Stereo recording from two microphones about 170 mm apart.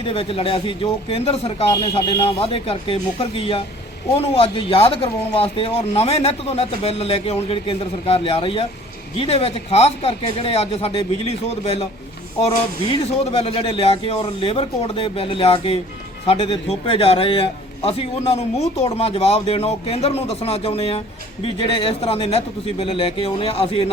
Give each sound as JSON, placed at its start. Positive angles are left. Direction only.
{"t": 0.0, "sound": "speech", "side_deg": 30}
{"t": 1.7, "sound": "speech", "side_deg": 25}